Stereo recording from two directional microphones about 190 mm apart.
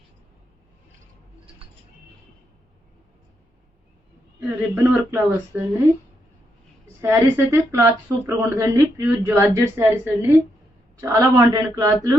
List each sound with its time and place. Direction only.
4.4 s speech: 10° right (ahead or behind)
7.0 s speech: 15° right (ahead or behind)